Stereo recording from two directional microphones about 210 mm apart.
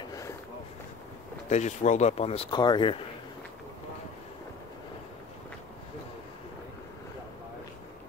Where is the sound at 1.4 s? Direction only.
35° left (ahead or behind).